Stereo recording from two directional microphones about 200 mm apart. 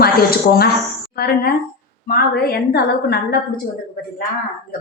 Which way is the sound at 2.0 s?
50° left (ahead or behind).